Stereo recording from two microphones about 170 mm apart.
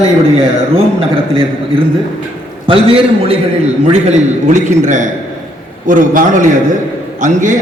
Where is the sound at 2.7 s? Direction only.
35° right (ahead or behind).